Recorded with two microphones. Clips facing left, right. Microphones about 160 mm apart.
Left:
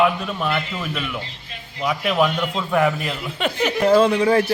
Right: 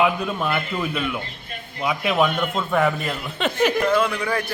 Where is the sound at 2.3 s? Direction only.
50° right (ahead or behind).